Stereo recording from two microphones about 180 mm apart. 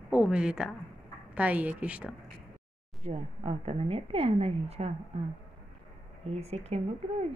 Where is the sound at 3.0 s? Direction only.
35° right (ahead or behind).